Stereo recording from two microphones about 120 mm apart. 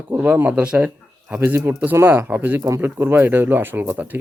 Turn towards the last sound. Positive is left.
turn(degrees=-15)  # may be behind; listen again after turning